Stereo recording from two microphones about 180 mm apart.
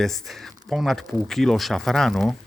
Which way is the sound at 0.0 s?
Centre (ahead or behind).